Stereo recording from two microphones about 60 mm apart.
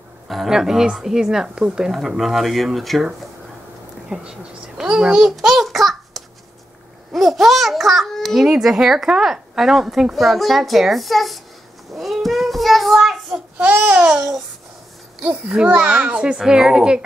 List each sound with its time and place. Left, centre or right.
0.5 s a woman's voice: centre
1.9 s a child's voice: centre
4.1 s a child's voice: centre
11.9 s child singing: centre
13.6 s babbling: right
14.0 s a child's voice: centre
15.4 s a woman's voice: centre